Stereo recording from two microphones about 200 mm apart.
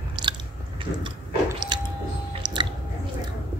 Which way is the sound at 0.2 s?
20° right (ahead or behind).